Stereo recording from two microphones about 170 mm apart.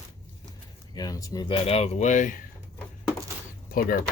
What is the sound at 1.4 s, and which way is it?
Speech, 30° left (ahead or behind).